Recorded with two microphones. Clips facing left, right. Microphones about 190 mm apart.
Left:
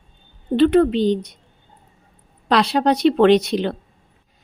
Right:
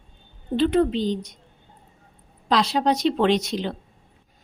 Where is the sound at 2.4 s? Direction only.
65° left (ahead or behind).